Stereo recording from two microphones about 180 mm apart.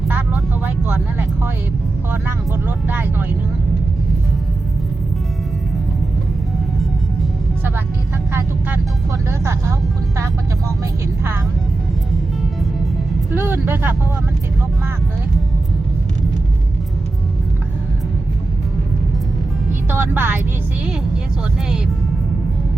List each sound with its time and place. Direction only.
0.1 s vehicle: 10° right (ahead or behind)
2.2 s vehicle: 10° right (ahead or behind)
8.3 s vehicle: 15° right (ahead or behind)
9.4 s music: 15° right (ahead or behind)
13.3 s music: 10° right (ahead or behind)
19.9 s music: 10° right (ahead or behind)